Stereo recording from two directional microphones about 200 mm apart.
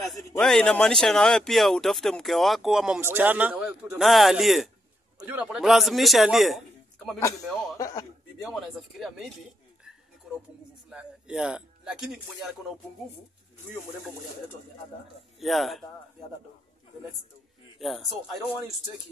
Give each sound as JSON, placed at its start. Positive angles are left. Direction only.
{"t": 0.4, "sound": "speech", "side_deg": 5}
{"t": 7.8, "sound": "a man's voice", "side_deg": 15}
{"t": 8.4, "sound": "speech", "side_deg": 0}
{"t": 10.9, "sound": "speech", "side_deg": -5}
{"t": 15.4, "sound": "speech", "side_deg": 0}
{"t": 17.7, "sound": "speech", "side_deg": 0}